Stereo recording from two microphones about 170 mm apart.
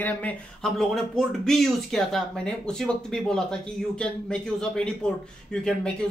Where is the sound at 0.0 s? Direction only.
10° left (ahead or behind).